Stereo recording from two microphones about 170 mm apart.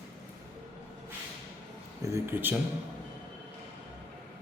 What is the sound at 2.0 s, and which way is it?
Speech, 15° right (ahead or behind).